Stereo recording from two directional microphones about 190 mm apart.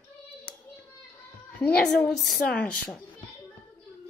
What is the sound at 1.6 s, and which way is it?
A woman's voice, 5° left (ahead or behind).